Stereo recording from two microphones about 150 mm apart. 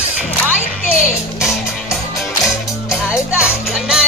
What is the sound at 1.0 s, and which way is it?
Music, 5° right (ahead or behind).